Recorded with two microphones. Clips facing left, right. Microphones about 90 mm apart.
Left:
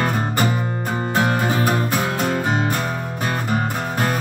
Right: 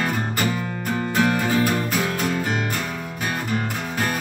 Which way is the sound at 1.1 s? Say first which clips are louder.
Left 1 dB; 25° left (ahead or behind).